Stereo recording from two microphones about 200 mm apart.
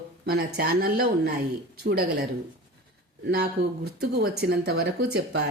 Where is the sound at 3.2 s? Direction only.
50° right (ahead or behind).